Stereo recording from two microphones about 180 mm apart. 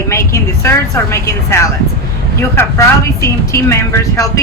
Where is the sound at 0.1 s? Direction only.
15° left (ahead or behind).